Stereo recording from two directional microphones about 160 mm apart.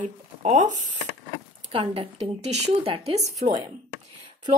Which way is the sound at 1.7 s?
35° right (ahead or behind).